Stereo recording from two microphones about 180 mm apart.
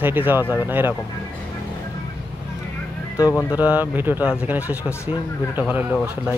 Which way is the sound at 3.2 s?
20° left (ahead or behind).